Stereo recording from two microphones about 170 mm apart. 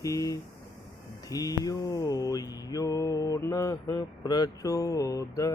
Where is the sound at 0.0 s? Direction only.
20° left (ahead or behind).